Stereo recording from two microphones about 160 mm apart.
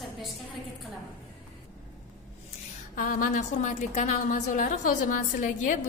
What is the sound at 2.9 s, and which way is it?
A woman's voice, 60° left (ahead or behind).